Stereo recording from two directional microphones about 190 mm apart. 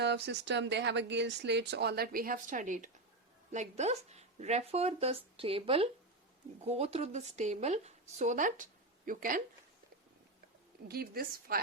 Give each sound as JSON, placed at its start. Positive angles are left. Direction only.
{"t": 0.0, "sound": "speech", "side_deg": -65}
{"t": 10.8, "sound": "a woman's voice", "side_deg": -55}